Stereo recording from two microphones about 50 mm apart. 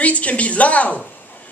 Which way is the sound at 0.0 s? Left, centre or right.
Left.